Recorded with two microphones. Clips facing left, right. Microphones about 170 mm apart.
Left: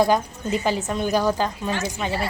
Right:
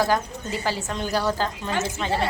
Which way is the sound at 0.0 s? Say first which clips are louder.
Left 3 dB; 20° left (ahead or behind).